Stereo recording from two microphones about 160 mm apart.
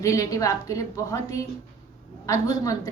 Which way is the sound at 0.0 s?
20° left (ahead or behind).